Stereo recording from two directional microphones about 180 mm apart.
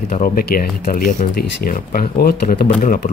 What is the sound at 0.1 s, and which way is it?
Speech, 50° left (ahead or behind).